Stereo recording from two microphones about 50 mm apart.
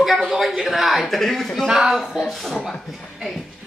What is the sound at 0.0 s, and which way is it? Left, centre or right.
A man's voice, centre.